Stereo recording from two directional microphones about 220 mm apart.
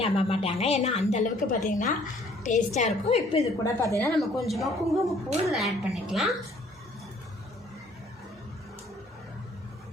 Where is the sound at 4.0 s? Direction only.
Centre (ahead or behind).